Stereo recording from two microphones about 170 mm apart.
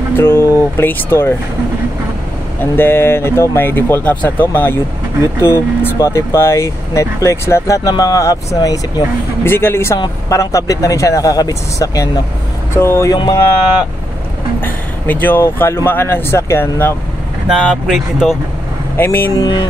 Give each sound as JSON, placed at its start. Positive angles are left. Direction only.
{"t": 0.1, "sound": "speech", "side_deg": 15}
{"t": 2.6, "sound": "speech", "side_deg": 15}
{"t": 14.6, "sound": "speech", "side_deg": 10}
{"t": 17.5, "sound": "speech", "side_deg": -5}
{"t": 18.9, "sound": "speech", "side_deg": 15}